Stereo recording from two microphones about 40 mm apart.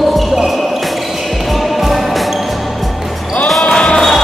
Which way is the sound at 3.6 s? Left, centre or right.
Centre.